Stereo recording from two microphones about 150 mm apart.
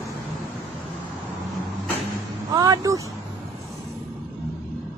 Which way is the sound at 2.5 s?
25° right (ahead or behind).